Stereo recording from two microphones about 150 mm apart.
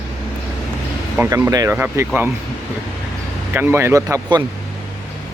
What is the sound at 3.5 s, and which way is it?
Speech, 15° right (ahead or behind).